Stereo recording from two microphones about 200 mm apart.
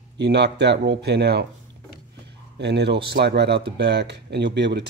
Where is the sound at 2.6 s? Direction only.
60° right (ahead or behind).